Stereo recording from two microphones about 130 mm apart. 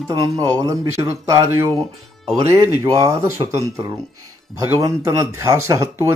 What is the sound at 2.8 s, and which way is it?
Speech, 25° right (ahead or behind).